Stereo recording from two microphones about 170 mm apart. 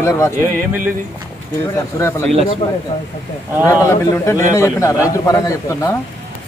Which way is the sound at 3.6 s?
20° left (ahead or behind).